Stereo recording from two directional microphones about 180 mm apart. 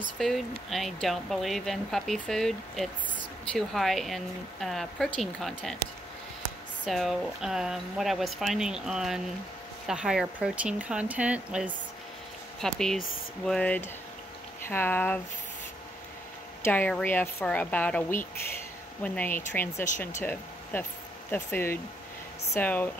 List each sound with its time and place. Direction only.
0.2 s speech: centre (ahead or behind)
6.8 s speech: centre (ahead or behind)
12.5 s speech: 5° left (ahead or behind)
16.6 s speech: 10° left (ahead or behind)